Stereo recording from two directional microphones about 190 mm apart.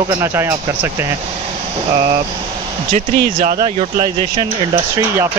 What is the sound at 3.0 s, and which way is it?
Speech, 45° right (ahead or behind).